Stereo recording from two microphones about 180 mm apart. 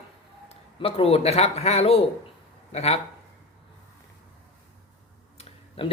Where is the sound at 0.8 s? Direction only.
30° left (ahead or behind).